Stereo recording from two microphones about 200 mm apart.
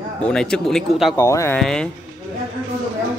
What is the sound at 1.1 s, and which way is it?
Speech, 15° left (ahead or behind).